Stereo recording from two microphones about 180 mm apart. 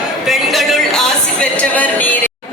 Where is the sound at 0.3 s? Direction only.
Centre (ahead or behind).